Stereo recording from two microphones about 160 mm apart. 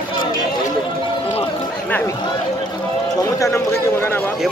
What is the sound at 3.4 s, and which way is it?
Speech, 15° left (ahead or behind).